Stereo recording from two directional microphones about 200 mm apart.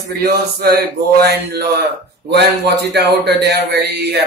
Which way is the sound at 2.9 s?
55° right (ahead or behind).